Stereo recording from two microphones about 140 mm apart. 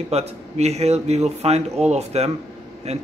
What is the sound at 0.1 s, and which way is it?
A man's voice, 50° right (ahead or behind).